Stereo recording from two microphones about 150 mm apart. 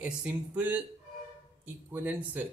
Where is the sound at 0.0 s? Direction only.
10° right (ahead or behind).